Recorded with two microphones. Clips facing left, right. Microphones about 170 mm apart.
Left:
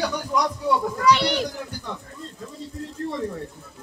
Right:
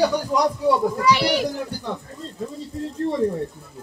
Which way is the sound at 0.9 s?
5° right (ahead or behind).